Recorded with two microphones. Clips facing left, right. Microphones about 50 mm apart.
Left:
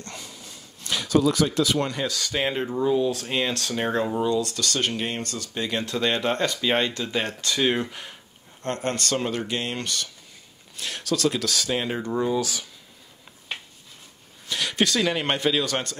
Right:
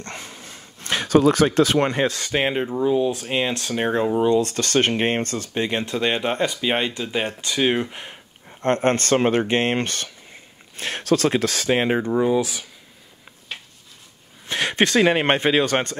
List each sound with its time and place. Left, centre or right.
0.0 s speech: right
4.2 s speech: right
7.9 s speech: right
12.1 s speech: centre
14.5 s a man's voice: right